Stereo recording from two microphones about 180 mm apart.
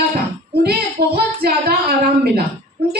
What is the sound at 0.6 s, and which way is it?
A woman's voice, 60° right (ahead or behind).